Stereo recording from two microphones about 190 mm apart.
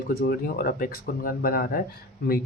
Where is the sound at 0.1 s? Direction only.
55° left (ahead or behind).